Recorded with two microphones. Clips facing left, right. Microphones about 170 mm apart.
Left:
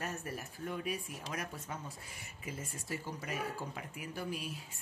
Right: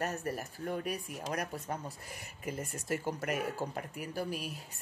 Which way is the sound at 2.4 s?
55° right (ahead or behind).